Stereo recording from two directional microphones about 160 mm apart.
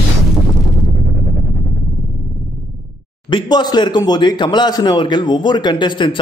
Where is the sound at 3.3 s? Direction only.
25° left (ahead or behind).